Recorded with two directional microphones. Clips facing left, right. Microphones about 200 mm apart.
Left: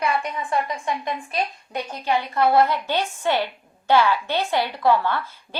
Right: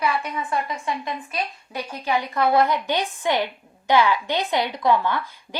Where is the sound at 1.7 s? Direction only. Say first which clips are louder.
Left 1 dB; 10° right (ahead or behind).